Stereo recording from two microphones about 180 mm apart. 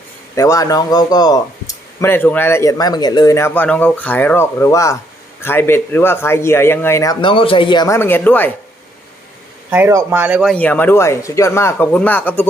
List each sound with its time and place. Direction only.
0.3 s speech: 20° left (ahead or behind)
9.6 s speech: 10° right (ahead or behind)
10.5 s speech: 10° left (ahead or behind)